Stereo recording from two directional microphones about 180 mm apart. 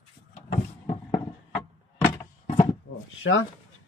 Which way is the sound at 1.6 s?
20° left (ahead or behind).